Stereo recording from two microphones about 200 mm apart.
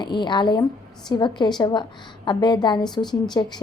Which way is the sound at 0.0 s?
25° left (ahead or behind).